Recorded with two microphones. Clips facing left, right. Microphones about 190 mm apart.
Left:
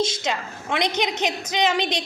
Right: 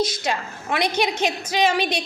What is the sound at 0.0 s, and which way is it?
A woman's voice, 25° left (ahead or behind).